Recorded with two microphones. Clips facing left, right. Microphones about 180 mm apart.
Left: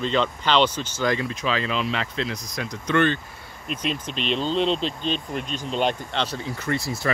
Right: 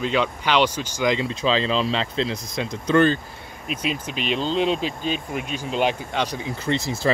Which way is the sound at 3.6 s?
5° right (ahead or behind).